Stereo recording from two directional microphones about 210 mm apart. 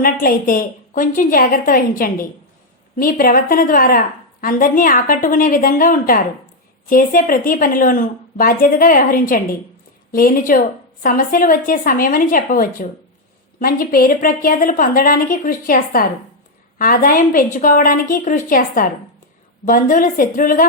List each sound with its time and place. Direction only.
0.0 s a woman's voice: 40° left (ahead or behind)